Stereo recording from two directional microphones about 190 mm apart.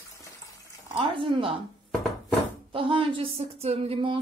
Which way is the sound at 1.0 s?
25° right (ahead or behind).